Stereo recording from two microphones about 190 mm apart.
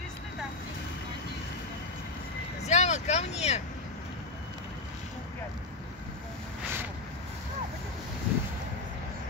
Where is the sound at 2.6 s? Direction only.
35° left (ahead or behind).